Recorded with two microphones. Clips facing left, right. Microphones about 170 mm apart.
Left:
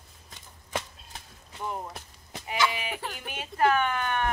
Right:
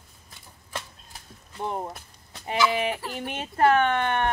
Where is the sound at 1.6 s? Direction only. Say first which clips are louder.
Right 4 dB; 35° right (ahead or behind).